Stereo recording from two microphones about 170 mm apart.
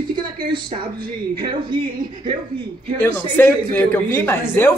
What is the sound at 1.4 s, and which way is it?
Speech, 25° right (ahead or behind).